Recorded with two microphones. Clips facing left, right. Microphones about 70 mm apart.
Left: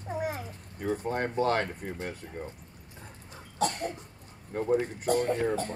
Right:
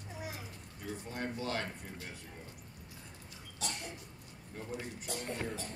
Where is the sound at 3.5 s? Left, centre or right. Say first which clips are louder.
Left 13 dB; left.